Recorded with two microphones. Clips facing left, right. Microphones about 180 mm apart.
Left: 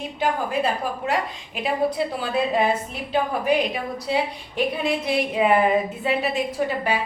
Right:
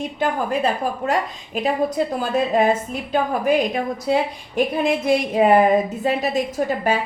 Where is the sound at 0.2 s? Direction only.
50° right (ahead or behind).